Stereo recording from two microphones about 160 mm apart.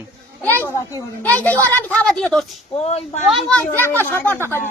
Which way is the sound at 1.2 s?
10° left (ahead or behind).